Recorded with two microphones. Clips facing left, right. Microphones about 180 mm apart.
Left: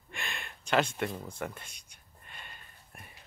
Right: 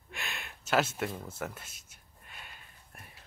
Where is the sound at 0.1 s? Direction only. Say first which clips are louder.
Left 1 dB; 5° right (ahead or behind).